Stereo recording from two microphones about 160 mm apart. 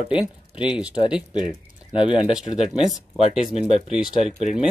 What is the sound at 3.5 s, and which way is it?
Speech, 45° right (ahead or behind).